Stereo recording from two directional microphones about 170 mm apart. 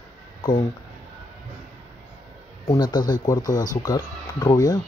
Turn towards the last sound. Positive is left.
turn(degrees=20)  # may be behind; listen again after turning